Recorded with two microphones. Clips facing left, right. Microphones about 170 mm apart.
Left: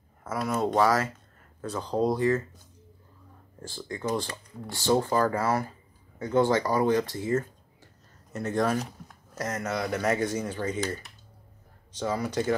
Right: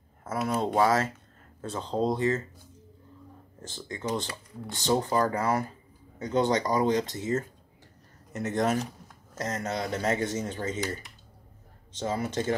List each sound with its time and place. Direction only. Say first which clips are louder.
0.2 s speech: left 1 dB; 25° right (ahead or behind)
3.6 s speech: left 2 dB; 20° right (ahead or behind)
12.0 s speech: left 1 dB; 25° right (ahead or behind)